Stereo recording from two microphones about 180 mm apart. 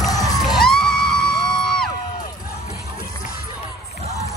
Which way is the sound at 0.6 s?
5° left (ahead or behind).